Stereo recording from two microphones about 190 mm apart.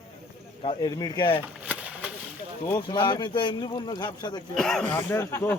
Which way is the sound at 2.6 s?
25° left (ahead or behind).